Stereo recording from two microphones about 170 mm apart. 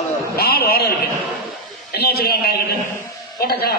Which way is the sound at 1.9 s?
70° left (ahead or behind).